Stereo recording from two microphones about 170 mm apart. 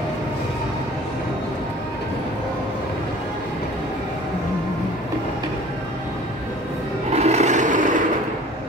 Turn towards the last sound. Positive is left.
turn(degrees=-50)  # may be behind; listen again after turning